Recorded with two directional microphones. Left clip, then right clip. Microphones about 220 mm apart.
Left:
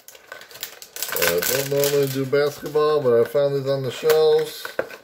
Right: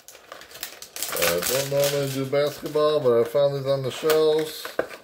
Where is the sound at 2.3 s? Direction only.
15° left (ahead or behind).